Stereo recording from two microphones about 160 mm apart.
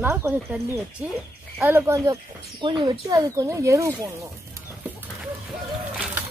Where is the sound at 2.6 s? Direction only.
30° right (ahead or behind).